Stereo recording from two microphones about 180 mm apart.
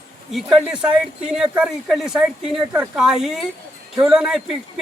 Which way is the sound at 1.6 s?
Centre (ahead or behind).